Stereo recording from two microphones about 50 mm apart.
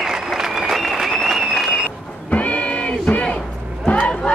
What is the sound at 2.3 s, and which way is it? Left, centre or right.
Music, left.